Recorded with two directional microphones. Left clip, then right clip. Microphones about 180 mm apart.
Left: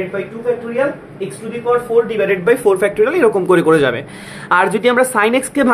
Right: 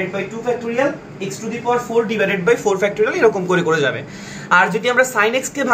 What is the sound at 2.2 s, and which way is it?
Speech, 30° left (ahead or behind).